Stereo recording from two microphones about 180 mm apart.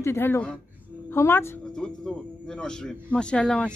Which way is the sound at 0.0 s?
10° left (ahead or behind).